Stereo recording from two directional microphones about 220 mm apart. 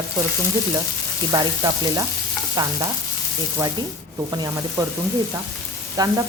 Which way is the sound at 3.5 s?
15° right (ahead or behind).